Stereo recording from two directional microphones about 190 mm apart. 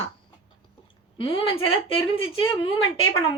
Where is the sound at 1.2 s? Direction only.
30° left (ahead or behind).